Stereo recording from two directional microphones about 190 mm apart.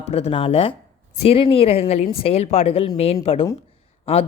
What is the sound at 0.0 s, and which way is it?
A woman's voice, 35° left (ahead or behind).